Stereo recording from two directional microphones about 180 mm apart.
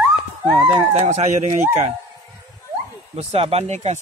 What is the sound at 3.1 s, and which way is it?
Speech, 35° right (ahead or behind).